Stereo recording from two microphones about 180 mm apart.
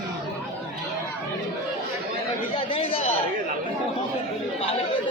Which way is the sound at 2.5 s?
30° left (ahead or behind).